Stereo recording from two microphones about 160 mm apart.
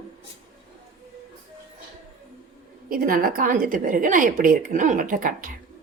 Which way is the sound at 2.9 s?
65° right (ahead or behind).